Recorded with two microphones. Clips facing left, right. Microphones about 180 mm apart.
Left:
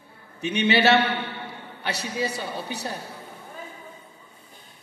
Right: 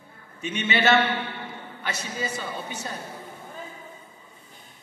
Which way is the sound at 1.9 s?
65° left (ahead or behind).